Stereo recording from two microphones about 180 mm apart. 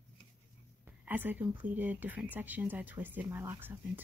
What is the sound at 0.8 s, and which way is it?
Speech, 10° right (ahead or behind).